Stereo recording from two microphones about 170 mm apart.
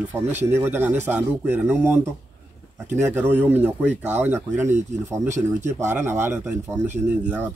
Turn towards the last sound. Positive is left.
turn(degrees=-10)  # may be behind; listen again after turning